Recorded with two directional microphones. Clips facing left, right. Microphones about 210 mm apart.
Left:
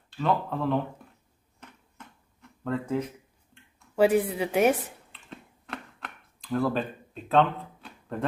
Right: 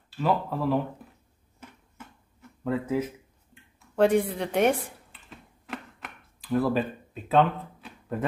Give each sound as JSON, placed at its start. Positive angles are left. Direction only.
{"t": 0.1, "sound": "speech", "side_deg": -5}
{"t": 2.6, "sound": "speech", "side_deg": -5}
{"t": 3.9, "sound": "computer keyboard", "side_deg": 5}